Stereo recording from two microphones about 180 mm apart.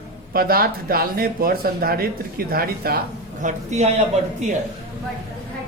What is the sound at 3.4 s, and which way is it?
Speech, 40° right (ahead or behind).